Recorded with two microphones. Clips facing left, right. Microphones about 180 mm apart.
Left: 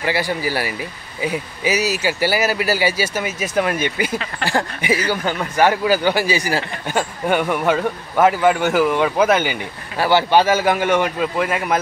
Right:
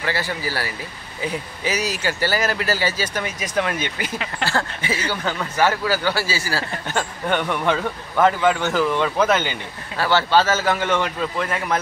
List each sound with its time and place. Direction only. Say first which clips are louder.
0.0 s a man's voice: left 4 dB; 15° left (ahead or behind)